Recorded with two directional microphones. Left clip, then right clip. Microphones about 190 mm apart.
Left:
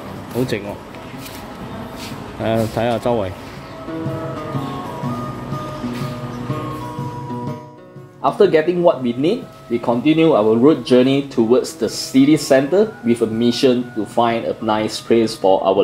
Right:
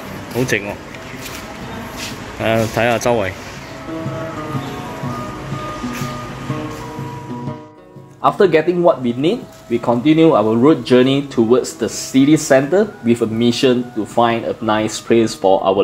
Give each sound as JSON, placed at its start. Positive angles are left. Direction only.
{"t": 2.4, "sound": "speech", "side_deg": 5}
{"t": 8.2, "sound": "speech", "side_deg": -30}